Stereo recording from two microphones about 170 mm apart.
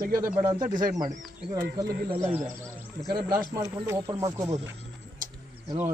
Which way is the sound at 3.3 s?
15° right (ahead or behind).